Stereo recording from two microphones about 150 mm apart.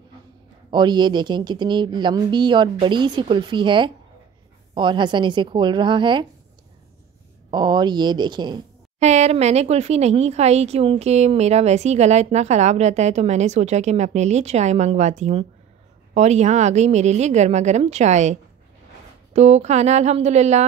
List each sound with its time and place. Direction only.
0.7 s speech: 30° right (ahead or behind)
7.5 s speech: 30° right (ahead or behind)
9.0 s a woman's voice: 50° right (ahead or behind)